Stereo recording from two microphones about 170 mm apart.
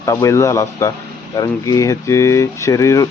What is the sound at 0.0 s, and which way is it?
Speech, 20° left (ahead or behind).